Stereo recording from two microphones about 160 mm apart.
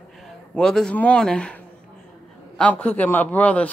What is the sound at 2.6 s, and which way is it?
Speech, 10° left (ahead or behind).